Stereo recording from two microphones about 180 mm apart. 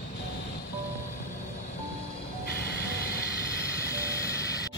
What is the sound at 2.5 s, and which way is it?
Vehicle, 60° left (ahead or behind).